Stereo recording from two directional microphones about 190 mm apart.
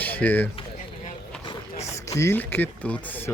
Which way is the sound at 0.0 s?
10° left (ahead or behind).